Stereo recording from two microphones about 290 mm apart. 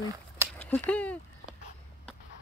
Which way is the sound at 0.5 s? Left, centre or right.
Centre.